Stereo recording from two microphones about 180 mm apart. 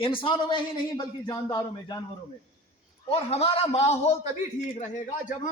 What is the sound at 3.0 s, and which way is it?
A man's voice, 35° left (ahead or behind).